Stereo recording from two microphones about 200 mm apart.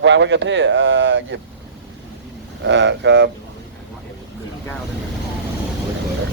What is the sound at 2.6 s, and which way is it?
Speech, 65° right (ahead or behind).